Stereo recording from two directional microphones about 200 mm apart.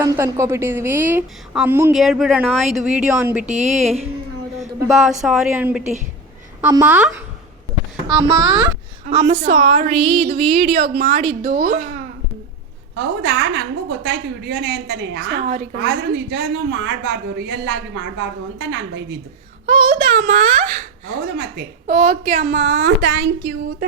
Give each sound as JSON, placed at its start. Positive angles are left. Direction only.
{"t": 0.0, "sound": "a woman's voice", "side_deg": -15}
{"t": 3.4, "sound": "a woman's voice", "side_deg": -35}
{"t": 4.6, "sound": "a woman's voice", "side_deg": 0}
{"t": 8.0, "sound": "a child's voice", "side_deg": -20}
{"t": 9.0, "sound": "a woman's voice", "side_deg": -35}
{"t": 10.9, "sound": "a woman's voice", "side_deg": -40}
{"t": 13.0, "sound": "a woman's voice", "side_deg": -60}
{"t": 19.6, "sound": "a woman's voice", "side_deg": -40}